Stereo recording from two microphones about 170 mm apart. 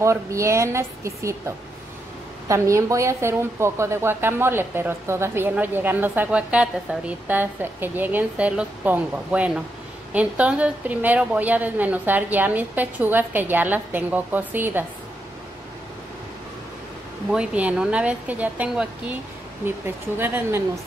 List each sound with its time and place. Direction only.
0.0 s a woman's voice: 15° right (ahead or behind)
2.4 s a woman's voice: 15° right (ahead or behind)
17.3 s a woman's voice: 5° right (ahead or behind)
20.2 s a woman's voice: 10° right (ahead or behind)